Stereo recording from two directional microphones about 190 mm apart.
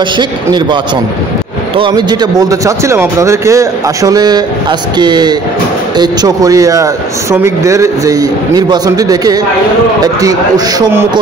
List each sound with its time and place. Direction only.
0.2 s speech: 25° right (ahead or behind)
1.8 s speech: 25° right (ahead or behind)